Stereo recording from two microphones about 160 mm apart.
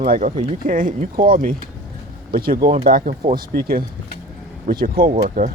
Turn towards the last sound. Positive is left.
turn(degrees=-50)  # may be behind; listen again after turning